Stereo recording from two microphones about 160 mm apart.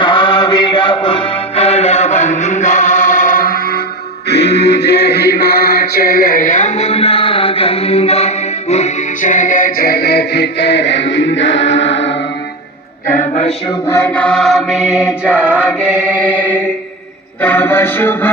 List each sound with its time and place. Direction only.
0.0 s music: 30° left (ahead or behind); by 3.8 s 65° left (ahead or behind)
4.3 s music: 90° left
13.7 s chant: 15° left (ahead or behind); by 16.3 s 5° right (ahead or behind)
17.4 s music: 10° left (ahead or behind)